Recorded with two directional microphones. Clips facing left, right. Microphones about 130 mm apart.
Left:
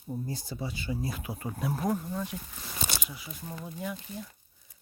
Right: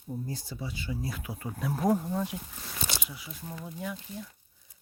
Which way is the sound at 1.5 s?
10° left (ahead or behind).